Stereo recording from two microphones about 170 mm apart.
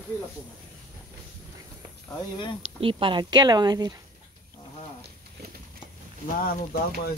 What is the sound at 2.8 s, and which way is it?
Speech, 30° right (ahead or behind).